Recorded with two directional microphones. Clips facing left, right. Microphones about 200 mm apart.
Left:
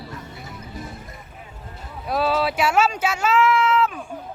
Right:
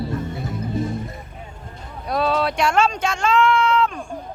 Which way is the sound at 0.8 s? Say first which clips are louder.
Right 11 dB; 25° right (ahead or behind).